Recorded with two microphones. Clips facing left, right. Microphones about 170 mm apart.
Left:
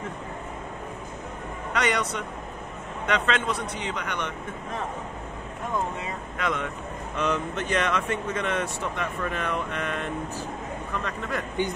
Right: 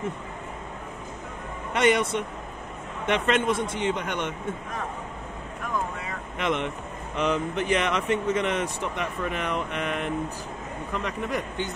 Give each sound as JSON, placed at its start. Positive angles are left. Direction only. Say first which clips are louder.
{"t": 1.7, "sound": "a man's voice", "louder": "right 4 dB", "side_deg": -25}
{"t": 3.3, "sound": "a man's voice", "louder": "right 4 dB", "side_deg": -25}
{"t": 5.6, "sound": "vehicle", "louder": "left 1 dB", "side_deg": 25}
{"t": 6.3, "sound": "a man's voice", "louder": "right 3 dB", "side_deg": -20}